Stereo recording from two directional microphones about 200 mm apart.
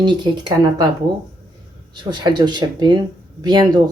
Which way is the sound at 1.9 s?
20° right (ahead or behind).